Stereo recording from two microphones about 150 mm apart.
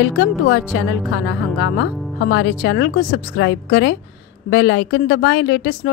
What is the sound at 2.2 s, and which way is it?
Speech, 90° left.